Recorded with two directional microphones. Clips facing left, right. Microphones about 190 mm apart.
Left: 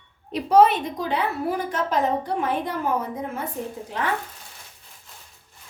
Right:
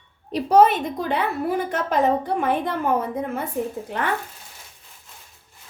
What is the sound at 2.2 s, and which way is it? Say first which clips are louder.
Speech: right 3 dB; 55° right (ahead or behind).